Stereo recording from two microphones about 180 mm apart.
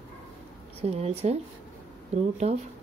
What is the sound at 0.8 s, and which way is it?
Speech, 35° right (ahead or behind).